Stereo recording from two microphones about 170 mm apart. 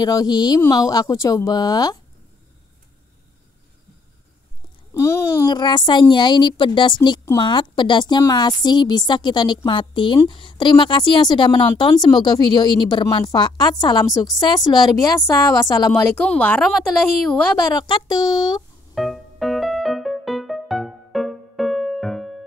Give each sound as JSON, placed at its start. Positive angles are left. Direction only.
{"t": 0.0, "sound": "a woman's voice", "side_deg": 20}
{"t": 4.9, "sound": "a woman's voice", "side_deg": 15}
{"t": 15.9, "sound": "speech", "side_deg": 5}
{"t": 17.6, "sound": "a woman's voice", "side_deg": 25}
{"t": 18.9, "sound": "music", "side_deg": 0}